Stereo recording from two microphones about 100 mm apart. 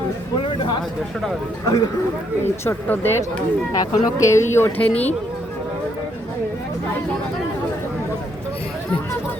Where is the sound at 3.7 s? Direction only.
30° left (ahead or behind).